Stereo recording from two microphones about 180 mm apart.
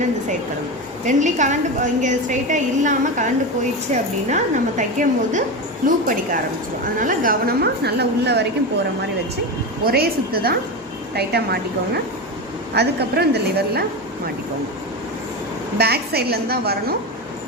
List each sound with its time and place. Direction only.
1.0 s a woman's voice: 40° right (ahead or behind); by 8.4 s 70° right (ahead or behind)
9.8 s a woman's voice: 60° right (ahead or behind)
12.7 s a woman's voice: 65° right (ahead or behind)
15.8 s a woman's voice: 60° right (ahead or behind)